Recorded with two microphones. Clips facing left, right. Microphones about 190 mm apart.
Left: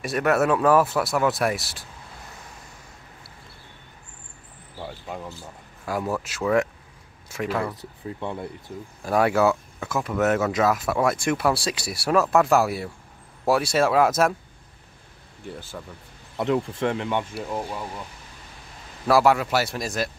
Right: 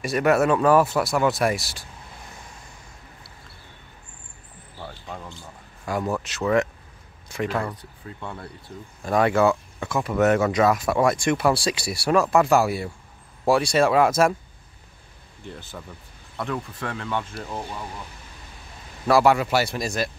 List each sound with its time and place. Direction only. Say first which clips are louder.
0.0 s speech: right 2 dB; centre (ahead or behind)
4.7 s speech: left 3 dB; 10° left (ahead or behind)
8.0 s speech: left 6 dB; 25° left (ahead or behind)
9.0 s speech: right 1 dB; 5° left (ahead or behind)
15.4 s speech: left 2 dB; 5° left (ahead or behind)
16.3 s speech: left 6 dB; 20° left (ahead or behind)
17.3 s speech: left 3 dB; 5° left (ahead or behind)
19.0 s speech: right 1 dB; centre (ahead or behind)